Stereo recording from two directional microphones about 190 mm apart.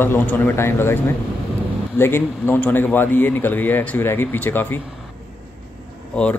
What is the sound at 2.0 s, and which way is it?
A man's voice, 10° left (ahead or behind).